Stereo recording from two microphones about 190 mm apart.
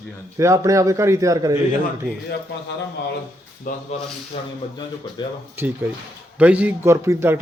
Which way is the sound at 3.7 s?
45° left (ahead or behind).